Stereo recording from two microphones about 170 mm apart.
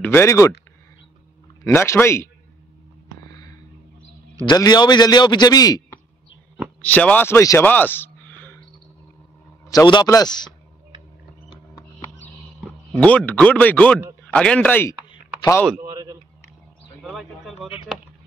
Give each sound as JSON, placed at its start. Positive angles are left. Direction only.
{"t": 0.0, "sound": "speech", "side_deg": 15}
{"t": 1.6, "sound": "speech", "side_deg": 15}
{"t": 4.5, "sound": "a man's voice", "side_deg": 25}
{"t": 6.8, "sound": "speech", "side_deg": 10}
{"t": 9.7, "sound": "a man's voice", "side_deg": 25}
{"t": 12.5, "sound": "speech", "side_deg": 5}
{"t": 15.8, "sound": "a sound", "side_deg": -20}
{"t": 17.0, "sound": "speech", "side_deg": 0}